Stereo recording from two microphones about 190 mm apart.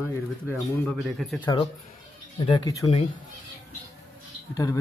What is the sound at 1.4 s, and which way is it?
Speech, 25° left (ahead or behind).